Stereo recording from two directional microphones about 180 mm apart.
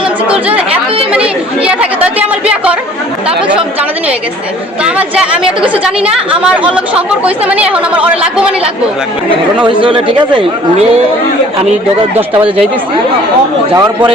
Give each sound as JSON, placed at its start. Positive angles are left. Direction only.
{"t": 0.0, "sound": "chatter", "side_deg": -5}
{"t": 4.8, "sound": "a woman's voice", "side_deg": -5}
{"t": 9.6, "sound": "speech", "side_deg": -30}
{"t": 12.1, "sound": "speech", "side_deg": -30}
{"t": 13.7, "sound": "speech", "side_deg": -20}